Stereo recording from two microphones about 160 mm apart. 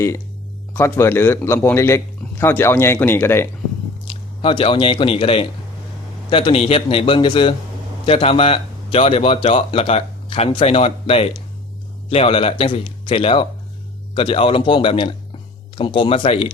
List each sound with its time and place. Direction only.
0.7 s a man's voice: 15° left (ahead or behind)
4.4 s speech: 35° left (ahead or behind)